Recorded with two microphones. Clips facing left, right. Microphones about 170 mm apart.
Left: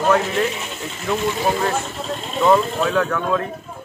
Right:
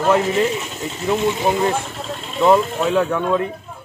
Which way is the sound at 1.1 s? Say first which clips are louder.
Right 2 dB; 15° right (ahead or behind).